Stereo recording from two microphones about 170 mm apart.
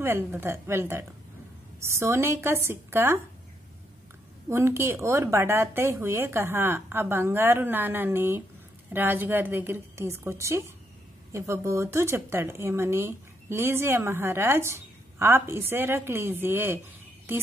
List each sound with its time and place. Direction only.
0.0 s speech: 15° right (ahead or behind)
4.5 s speech: 15° right (ahead or behind)